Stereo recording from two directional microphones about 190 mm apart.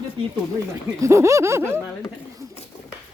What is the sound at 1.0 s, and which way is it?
Speech, 15° right (ahead or behind).